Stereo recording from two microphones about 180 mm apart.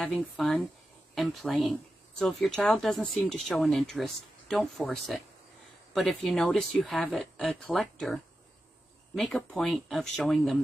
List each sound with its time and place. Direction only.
0.0 s speech: centre (ahead or behind)